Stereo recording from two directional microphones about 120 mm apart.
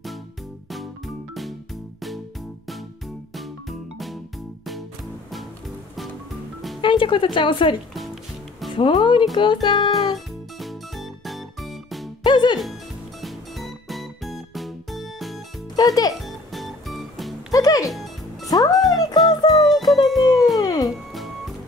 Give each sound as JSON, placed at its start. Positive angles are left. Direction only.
{"t": 0.7, "sound": "music", "side_deg": 0}
{"t": 3.3, "sound": "music", "side_deg": 0}
{"t": 6.8, "sound": "speech", "side_deg": 45}
{"t": 7.9, "sound": "music", "side_deg": 0}
{"t": 8.7, "sound": "speech", "side_deg": 45}
{"t": 9.3, "sound": "music", "side_deg": 40}
{"t": 10.1, "sound": "music", "side_deg": 0}
{"t": 12.2, "sound": "music", "side_deg": 40}
{"t": 13.2, "sound": "music", "side_deg": 0}
{"t": 15.7, "sound": "speech", "side_deg": 30}
{"t": 16.2, "sound": "music", "side_deg": 0}
{"t": 17.5, "sound": "music", "side_deg": 30}
{"t": 19.7, "sound": "music", "side_deg": 0}
{"t": 20.5, "sound": "music", "side_deg": 30}